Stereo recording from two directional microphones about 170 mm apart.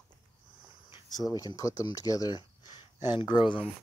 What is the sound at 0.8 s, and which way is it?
Cricket, 25° left (ahead or behind).